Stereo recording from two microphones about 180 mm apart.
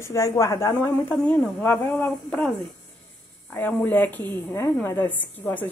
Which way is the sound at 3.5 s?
10° left (ahead or behind).